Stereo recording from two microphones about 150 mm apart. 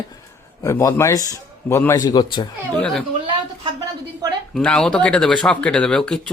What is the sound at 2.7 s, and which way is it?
Speech, 5° left (ahead or behind).